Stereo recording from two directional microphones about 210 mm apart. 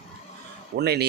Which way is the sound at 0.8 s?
50° right (ahead or behind).